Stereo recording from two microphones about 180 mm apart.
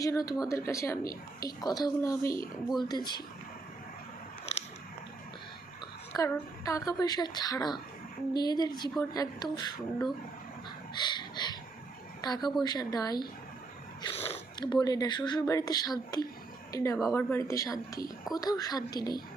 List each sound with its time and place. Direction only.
0.0 s speech: 20° left (ahead or behind)
6.1 s a woman's voice: 20° left (ahead or behind)
10.9 s a sound: 25° left (ahead or behind)
12.2 s speech: 20° left (ahead or behind)
14.0 s speech: 30° left (ahead or behind)